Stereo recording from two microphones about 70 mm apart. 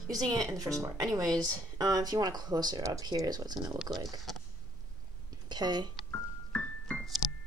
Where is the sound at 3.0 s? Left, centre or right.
Right.